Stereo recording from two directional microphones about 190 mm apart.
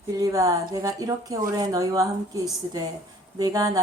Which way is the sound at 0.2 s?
20° right (ahead or behind).